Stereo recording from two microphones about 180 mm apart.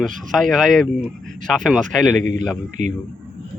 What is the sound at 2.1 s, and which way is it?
Speech, 45° right (ahead or behind).